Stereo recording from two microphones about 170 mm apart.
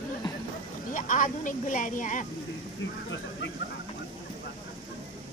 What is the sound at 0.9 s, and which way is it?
A woman's voice, 50° left (ahead or behind).